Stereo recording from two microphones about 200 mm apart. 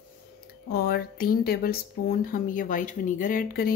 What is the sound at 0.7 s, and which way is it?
Speech, 50° left (ahead or behind).